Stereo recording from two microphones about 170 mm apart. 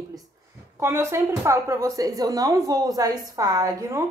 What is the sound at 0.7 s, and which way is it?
Speech, 15° right (ahead or behind).